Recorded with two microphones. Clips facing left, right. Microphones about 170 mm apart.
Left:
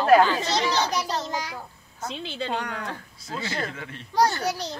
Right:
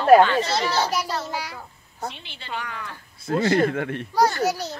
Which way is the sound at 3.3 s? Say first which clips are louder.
Right 11 dB; 50° right (ahead or behind).